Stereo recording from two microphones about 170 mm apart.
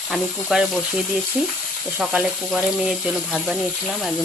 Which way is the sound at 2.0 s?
5° right (ahead or behind).